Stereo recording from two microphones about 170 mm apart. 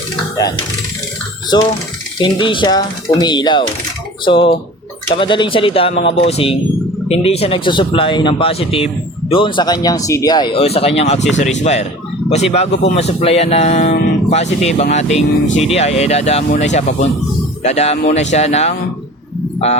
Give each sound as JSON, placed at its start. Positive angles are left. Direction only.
{"t": 1.5, "sound": "speech", "side_deg": 25}